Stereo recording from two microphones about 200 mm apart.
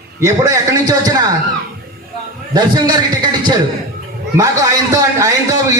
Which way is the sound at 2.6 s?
20° right (ahead or behind).